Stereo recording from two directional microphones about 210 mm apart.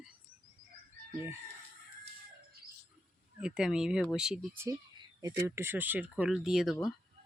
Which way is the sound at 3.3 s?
5° right (ahead or behind).